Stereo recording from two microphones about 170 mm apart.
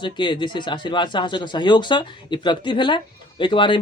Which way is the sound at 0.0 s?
25° left (ahead or behind).